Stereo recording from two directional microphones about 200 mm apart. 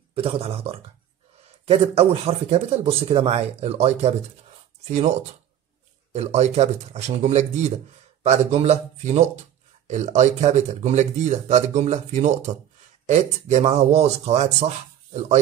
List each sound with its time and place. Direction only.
0.1 s speech: 30° right (ahead or behind)
6.1 s speech: 35° right (ahead or behind)